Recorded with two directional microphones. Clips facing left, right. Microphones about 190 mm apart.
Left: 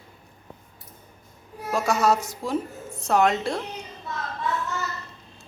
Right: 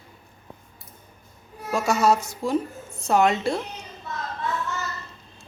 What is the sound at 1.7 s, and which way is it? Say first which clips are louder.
Speech: right 1 dB; centre (ahead or behind).